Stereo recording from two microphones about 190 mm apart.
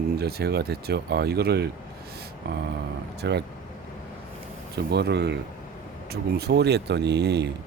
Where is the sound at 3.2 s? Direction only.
60° right (ahead or behind).